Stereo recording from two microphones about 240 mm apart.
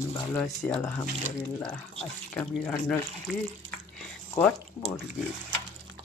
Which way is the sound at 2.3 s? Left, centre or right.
Centre.